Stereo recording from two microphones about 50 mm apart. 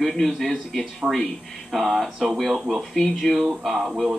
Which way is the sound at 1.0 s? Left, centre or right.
Centre.